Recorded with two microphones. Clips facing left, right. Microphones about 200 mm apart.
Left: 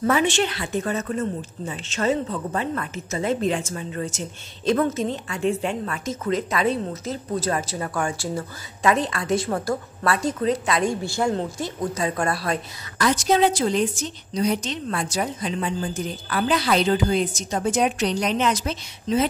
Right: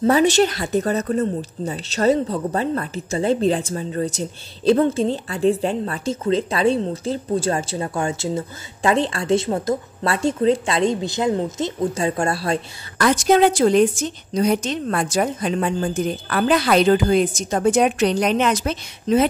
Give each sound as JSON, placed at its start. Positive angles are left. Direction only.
{"t": 0.0, "sound": "speech", "side_deg": -35}
{"t": 12.9, "sound": "a woman's voice", "side_deg": -55}